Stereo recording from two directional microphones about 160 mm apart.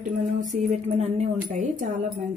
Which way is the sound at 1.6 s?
60° right (ahead or behind).